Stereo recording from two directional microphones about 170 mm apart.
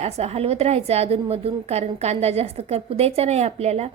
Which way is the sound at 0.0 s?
35° right (ahead or behind).